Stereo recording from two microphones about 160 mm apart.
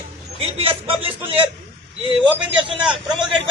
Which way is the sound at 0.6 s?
35° right (ahead or behind).